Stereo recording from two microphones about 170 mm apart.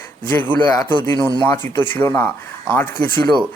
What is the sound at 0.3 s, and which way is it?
Speech, 10° left (ahead or behind).